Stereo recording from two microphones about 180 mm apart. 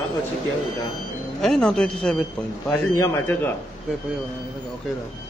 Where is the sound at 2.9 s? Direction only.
15° left (ahead or behind).